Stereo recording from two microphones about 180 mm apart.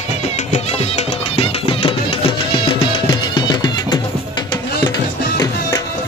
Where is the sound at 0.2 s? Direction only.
35° left (ahead or behind).